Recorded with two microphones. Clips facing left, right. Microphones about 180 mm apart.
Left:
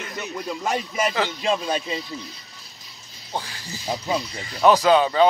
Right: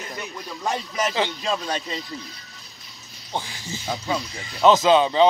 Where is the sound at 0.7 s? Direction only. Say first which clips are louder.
Even; 5° left (ahead or behind).